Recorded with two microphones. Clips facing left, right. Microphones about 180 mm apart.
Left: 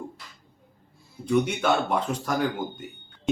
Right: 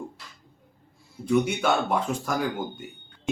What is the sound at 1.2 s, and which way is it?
Speech, 5° right (ahead or behind).